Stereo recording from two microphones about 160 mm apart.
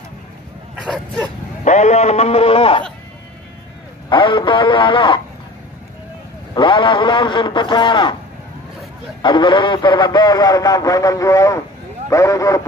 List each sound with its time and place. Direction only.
0.7 s speech: 5° left (ahead or behind)
1.6 s a man's voice: 45° left (ahead or behind)
4.1 s a man's voice: 30° left (ahead or behind)
6.5 s a man's voice: 30° left (ahead or behind)
9.2 s a man's voice: 30° left (ahead or behind)